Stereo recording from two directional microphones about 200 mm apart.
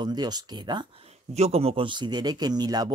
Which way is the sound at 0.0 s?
20° right (ahead or behind).